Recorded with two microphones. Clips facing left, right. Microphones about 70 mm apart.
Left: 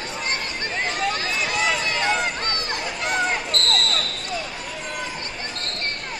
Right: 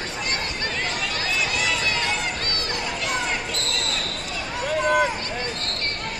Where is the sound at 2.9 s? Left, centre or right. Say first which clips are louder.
Left 5 dB; left.